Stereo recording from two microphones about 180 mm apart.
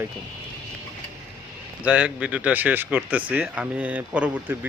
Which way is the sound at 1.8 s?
5° right (ahead or behind).